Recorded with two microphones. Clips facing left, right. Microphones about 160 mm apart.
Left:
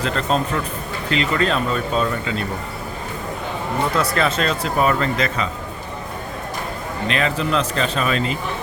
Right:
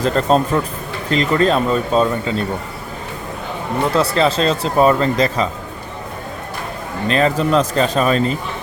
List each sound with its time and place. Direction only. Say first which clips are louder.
0.0 s speech: right 6 dB; 40° right (ahead or behind)
3.9 s speech: right 6 dB; 30° right (ahead or behind)
7.1 s speech: right 6 dB; 40° right (ahead or behind)